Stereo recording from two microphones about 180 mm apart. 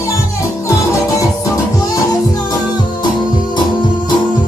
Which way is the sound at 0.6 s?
15° left (ahead or behind).